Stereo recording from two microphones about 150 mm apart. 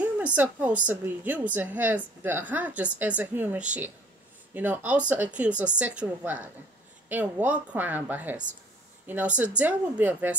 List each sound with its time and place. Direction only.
0.0 s a woman's voice: 10° right (ahead or behind)